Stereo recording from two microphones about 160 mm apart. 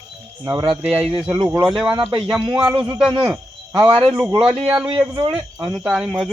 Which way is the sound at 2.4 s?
25° right (ahead or behind).